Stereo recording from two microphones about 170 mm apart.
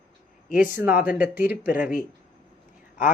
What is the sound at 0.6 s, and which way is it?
Speech, 10° right (ahead or behind).